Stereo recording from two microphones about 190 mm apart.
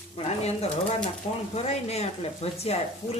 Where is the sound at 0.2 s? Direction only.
35° left (ahead or behind).